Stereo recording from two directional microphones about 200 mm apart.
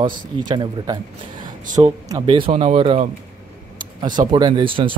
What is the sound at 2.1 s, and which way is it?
Speech, 25° right (ahead or behind).